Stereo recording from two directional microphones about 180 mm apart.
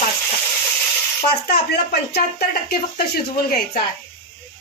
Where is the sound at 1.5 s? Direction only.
60° left (ahead or behind).